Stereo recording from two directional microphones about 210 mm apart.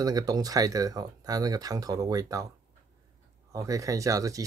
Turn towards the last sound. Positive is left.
turn(degrees=-15)  # may be behind; listen again after turning